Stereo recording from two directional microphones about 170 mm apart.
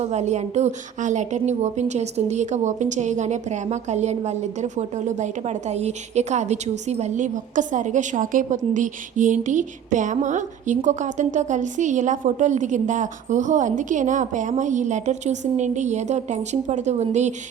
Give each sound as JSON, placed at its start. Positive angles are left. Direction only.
{"t": 0.0, "sound": "a woman's voice", "side_deg": -40}